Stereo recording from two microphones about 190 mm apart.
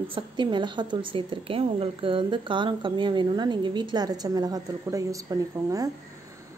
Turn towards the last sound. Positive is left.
turn(degrees=-20)  # may be behind; listen again after turning